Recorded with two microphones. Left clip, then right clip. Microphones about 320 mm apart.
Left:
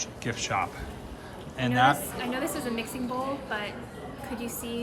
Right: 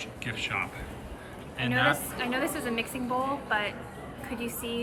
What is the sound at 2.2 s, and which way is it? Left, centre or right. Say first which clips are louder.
A woman's voice: right 1 dB; centre.